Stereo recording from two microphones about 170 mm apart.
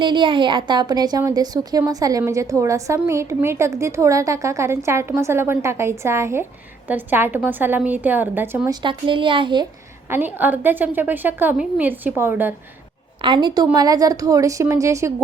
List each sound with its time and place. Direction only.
0.0 s a woman's voice: 30° right (ahead or behind); by 8.7 s 10° right (ahead or behind)
8.7 s a woman's voice: 30° right (ahead or behind)
10.1 s a woman's voice: 10° right (ahead or behind)
13.2 s a woman's voice: 25° right (ahead or behind)